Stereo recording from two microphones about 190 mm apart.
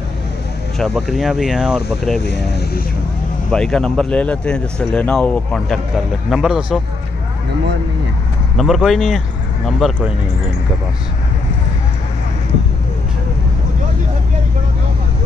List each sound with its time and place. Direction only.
0.7 s speech: centre (ahead or behind)
2.2 s speech: 60° left (ahead or behind)
3.5 s speech: 5° left (ahead or behind)
8.5 s speech: centre (ahead or behind)